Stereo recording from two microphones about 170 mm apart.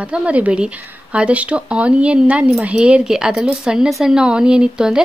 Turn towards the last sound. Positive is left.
turn(degrees=-5)  # may be behind; listen again after turning